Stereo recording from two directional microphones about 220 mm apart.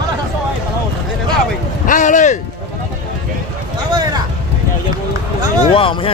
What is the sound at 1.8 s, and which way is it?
Speech, 35° left (ahead or behind).